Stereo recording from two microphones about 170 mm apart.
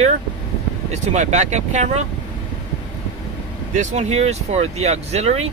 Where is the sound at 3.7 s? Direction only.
45° right (ahead or behind).